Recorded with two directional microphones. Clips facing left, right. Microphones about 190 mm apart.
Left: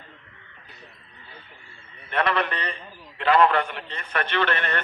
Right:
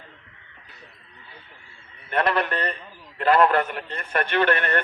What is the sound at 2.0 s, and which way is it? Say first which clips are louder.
Speech: right 1 dB; 45° right (ahead or behind).